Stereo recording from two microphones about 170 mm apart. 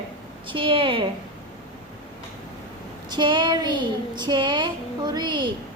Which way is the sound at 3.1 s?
25° right (ahead or behind).